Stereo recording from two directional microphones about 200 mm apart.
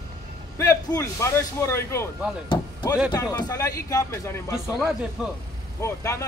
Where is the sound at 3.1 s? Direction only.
15° left (ahead or behind).